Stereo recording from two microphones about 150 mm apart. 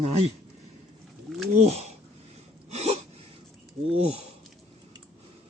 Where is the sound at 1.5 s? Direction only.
45° right (ahead or behind).